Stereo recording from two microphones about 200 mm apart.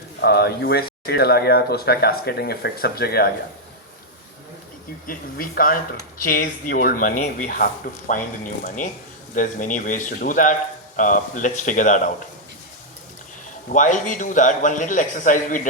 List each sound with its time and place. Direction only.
0.2 s speech: 55° left (ahead or behind)
5.0 s a man's voice: 45° left (ahead or behind)
13.7 s a man's voice: 40° left (ahead or behind)